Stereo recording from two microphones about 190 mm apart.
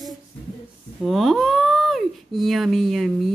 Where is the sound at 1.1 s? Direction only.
Centre (ahead or behind).